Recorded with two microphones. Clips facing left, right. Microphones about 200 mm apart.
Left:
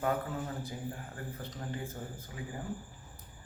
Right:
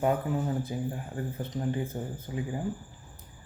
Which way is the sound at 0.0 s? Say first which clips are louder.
Right 6 dB; 20° right (ahead or behind).